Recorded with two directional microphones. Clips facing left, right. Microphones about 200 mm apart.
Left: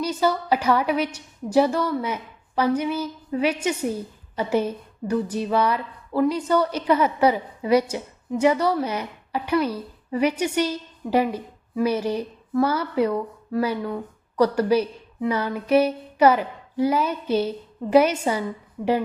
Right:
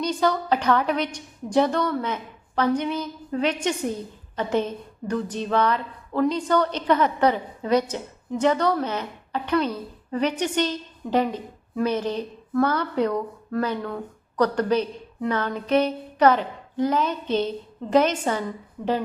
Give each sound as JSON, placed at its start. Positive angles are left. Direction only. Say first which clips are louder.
{"t": 0.0, "sound": "a woman's voice", "louder": "even", "side_deg": 5}